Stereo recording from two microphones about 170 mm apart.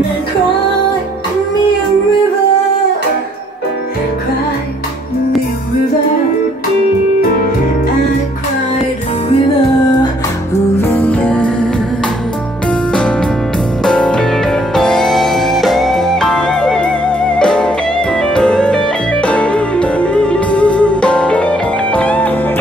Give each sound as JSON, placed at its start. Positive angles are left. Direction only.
{"t": 10.8, "sound": "music", "side_deg": 10}
{"t": 13.8, "sound": "music", "side_deg": 5}